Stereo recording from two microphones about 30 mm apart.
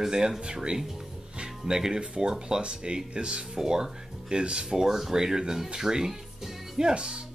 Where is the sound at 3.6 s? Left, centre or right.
Right.